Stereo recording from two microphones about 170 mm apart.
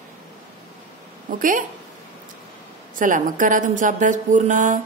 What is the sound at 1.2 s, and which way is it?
Speech, 50° right (ahead or behind).